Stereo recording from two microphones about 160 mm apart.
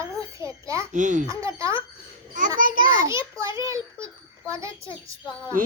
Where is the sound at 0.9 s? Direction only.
50° right (ahead or behind).